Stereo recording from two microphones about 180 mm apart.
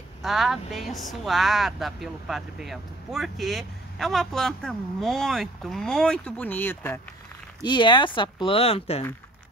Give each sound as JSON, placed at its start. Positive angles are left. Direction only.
{"t": 0.2, "sound": "speech", "side_deg": 0}
{"t": 7.6, "sound": "speech", "side_deg": 25}